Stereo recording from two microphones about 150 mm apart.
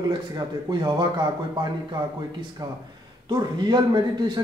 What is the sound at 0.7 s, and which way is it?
Speech, 30° right (ahead or behind).